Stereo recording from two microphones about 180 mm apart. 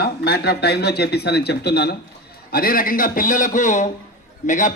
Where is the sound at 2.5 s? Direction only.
55° left (ahead or behind).